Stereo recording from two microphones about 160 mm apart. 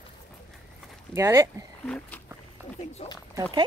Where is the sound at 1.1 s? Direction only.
20° right (ahead or behind).